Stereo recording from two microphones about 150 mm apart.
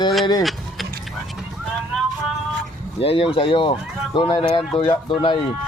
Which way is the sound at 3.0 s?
40° left (ahead or behind).